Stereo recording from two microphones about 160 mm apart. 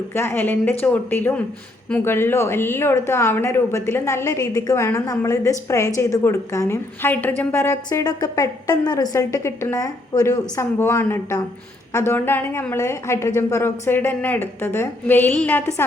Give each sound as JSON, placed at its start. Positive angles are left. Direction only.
{"t": 0.1, "sound": "a woman's voice", "side_deg": 15}